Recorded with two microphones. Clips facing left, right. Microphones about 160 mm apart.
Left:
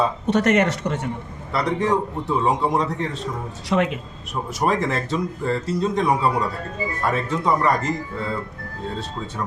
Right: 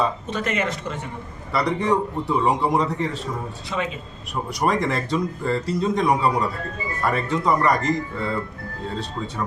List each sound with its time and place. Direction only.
0.3 s speech: 70° left (ahead or behind)
1.5 s speech: centre (ahead or behind)
3.7 s speech: 65° left (ahead or behind)
4.6 s speech: centre (ahead or behind)